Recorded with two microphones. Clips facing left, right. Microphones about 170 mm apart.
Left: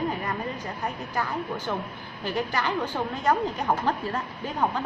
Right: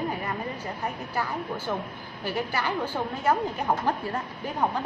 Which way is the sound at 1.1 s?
10° right (ahead or behind).